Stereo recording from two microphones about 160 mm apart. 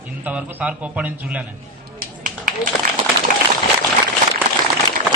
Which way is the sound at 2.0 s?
60° right (ahead or behind).